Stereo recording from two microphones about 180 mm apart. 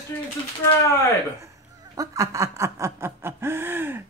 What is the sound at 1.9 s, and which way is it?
Speech, 20° right (ahead or behind).